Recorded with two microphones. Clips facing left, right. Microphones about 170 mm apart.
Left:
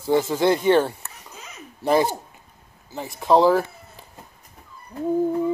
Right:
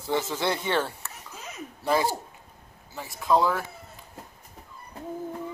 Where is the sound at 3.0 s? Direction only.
30° left (ahead or behind).